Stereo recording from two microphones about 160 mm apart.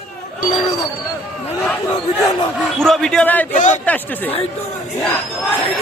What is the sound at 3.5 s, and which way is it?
Speech, 50° left (ahead or behind).